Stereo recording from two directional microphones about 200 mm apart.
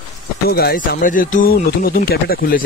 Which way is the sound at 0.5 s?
50° left (ahead or behind).